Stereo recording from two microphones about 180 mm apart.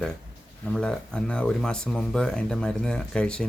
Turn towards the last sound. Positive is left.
turn(degrees=5)  # may be behind; listen again after turning